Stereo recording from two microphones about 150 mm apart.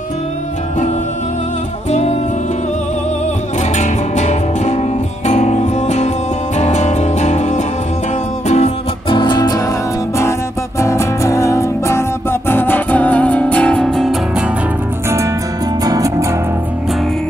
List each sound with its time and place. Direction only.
1.9 s music: 45° left (ahead or behind)
3.7 s music: 50° left (ahead or behind)
9.1 s music: 30° left (ahead or behind); by 14.4 s centre (ahead or behind)
15.0 s music: 20° right (ahead or behind)